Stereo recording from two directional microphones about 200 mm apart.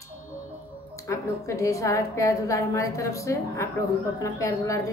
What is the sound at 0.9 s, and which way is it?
Speech, 15° left (ahead or behind).